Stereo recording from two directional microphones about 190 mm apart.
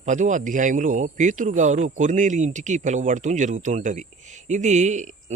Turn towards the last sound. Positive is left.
turn(degrees=-40)  # may be behind; listen again after turning